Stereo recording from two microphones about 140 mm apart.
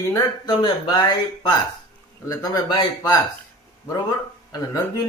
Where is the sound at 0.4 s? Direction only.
30° left (ahead or behind).